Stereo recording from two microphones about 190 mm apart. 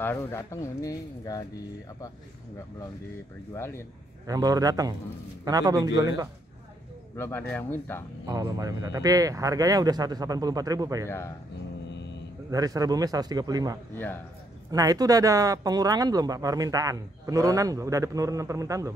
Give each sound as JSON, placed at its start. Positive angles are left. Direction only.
{"t": 0.0, "sound": "speech", "side_deg": 10}
{"t": 3.5, "sound": "speech", "side_deg": 15}
{"t": 4.3, "sound": "speech", "side_deg": -20}
{"t": 7.2, "sound": "speech", "side_deg": 10}
{"t": 8.3, "sound": "speech", "side_deg": -20}
{"t": 11.1, "sound": "speech", "side_deg": 15}
{"t": 12.4, "sound": "speech", "side_deg": -20}